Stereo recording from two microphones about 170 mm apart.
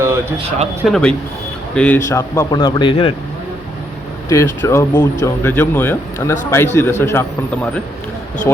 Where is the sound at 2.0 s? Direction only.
20° left (ahead or behind).